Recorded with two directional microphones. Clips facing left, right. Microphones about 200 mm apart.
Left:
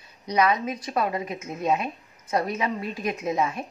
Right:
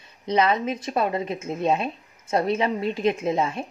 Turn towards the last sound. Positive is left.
turn(degrees=-30)  # may be behind; listen again after turning